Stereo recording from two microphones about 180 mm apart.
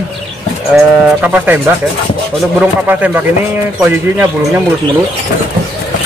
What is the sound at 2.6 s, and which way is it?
Speech, 10° right (ahead or behind).